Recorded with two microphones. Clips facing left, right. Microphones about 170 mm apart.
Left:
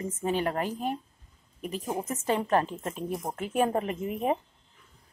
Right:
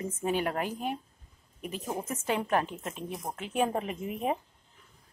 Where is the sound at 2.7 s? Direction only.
35° left (ahead or behind).